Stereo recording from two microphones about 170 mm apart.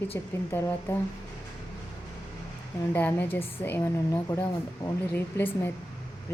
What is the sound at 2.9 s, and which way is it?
A woman's voice, 10° left (ahead or behind).